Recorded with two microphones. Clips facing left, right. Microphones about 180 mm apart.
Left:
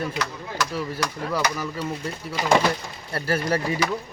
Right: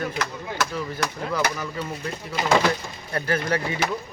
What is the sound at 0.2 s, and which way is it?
Speech, 50° right (ahead or behind).